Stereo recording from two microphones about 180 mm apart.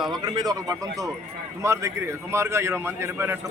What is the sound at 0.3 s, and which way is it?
A man's voice, 20° right (ahead or behind).